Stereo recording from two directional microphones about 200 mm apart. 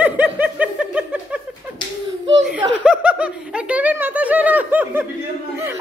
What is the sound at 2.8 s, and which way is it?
Snicker, 5° right (ahead or behind).